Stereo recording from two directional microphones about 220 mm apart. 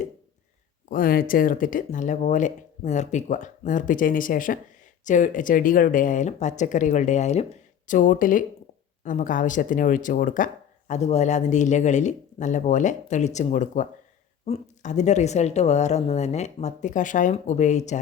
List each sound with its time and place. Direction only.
0.9 s speech: 40° left (ahead or behind)